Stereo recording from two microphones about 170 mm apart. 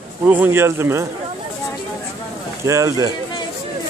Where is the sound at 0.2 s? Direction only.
10° right (ahead or behind).